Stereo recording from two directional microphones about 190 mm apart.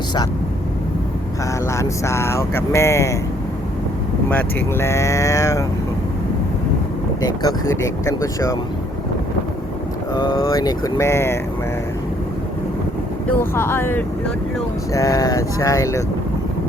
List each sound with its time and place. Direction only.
1.6 s speech: 15° left (ahead or behind)
4.3 s speech: 10° left (ahead or behind)
7.2 s speech: 20° left (ahead or behind)
10.2 s speech: 20° left (ahead or behind)
13.3 s speech: 10° left (ahead or behind)